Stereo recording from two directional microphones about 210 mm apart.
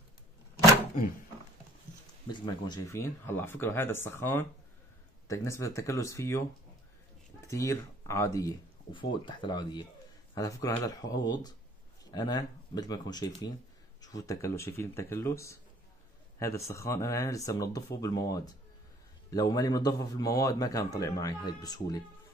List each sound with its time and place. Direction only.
2.2 s speech: 20° left (ahead or behind)
7.4 s speech: 15° left (ahead or behind)